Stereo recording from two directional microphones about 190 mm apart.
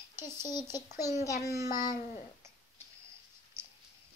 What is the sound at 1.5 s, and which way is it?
Speech, 15° right (ahead or behind).